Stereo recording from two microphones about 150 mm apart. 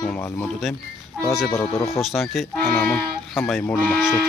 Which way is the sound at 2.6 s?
10° left (ahead or behind).